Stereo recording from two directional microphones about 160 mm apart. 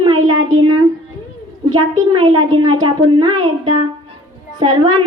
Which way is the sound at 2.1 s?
30° right (ahead or behind).